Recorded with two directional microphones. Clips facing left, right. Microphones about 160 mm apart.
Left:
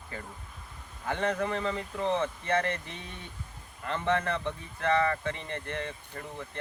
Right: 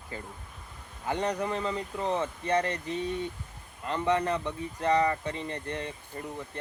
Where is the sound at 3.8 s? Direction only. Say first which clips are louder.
Right 2 dB; 20° right (ahead or behind).